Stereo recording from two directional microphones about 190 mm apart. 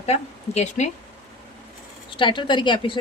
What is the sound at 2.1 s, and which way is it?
Speech, 25° left (ahead or behind).